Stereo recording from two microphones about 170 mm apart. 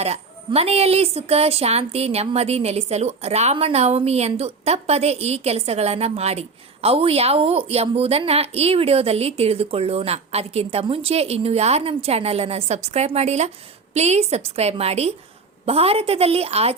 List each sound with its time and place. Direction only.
0.0 s a woman's voice: 35° right (ahead or behind)